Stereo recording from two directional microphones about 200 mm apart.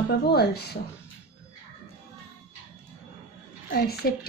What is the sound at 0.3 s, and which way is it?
Speech, 55° left (ahead or behind).